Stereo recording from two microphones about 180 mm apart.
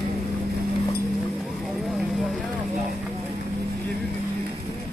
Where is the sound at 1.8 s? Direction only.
Centre (ahead or behind).